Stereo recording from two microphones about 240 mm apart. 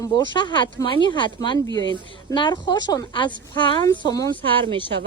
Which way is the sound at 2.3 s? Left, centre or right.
Centre.